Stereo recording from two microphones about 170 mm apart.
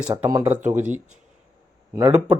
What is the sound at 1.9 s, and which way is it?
Speech, 15° right (ahead or behind).